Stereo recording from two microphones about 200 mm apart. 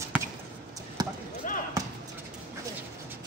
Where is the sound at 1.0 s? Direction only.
20° right (ahead or behind).